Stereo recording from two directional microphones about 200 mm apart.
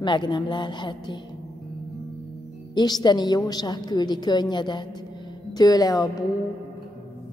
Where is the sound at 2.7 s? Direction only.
20° left (ahead or behind).